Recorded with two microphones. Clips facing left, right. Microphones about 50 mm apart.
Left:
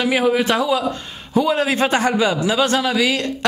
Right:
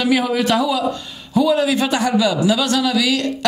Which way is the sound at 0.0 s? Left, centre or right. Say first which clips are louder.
Even; left.